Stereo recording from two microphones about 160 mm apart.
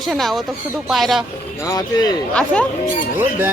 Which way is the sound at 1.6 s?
25° left (ahead or behind).